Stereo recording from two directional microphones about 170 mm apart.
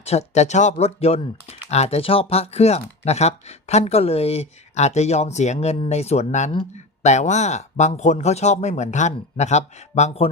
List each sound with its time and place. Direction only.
0.0 s speech: 40° left (ahead or behind)